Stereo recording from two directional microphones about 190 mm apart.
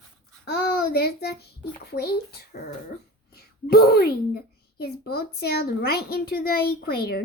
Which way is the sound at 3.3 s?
55° left (ahead or behind).